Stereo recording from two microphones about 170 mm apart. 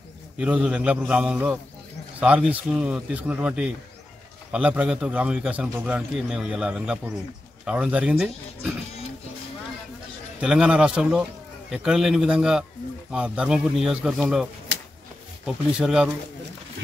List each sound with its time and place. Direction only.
0.4 s speech: 5° right (ahead or behind)
10.4 s speech: 5° right (ahead or behind)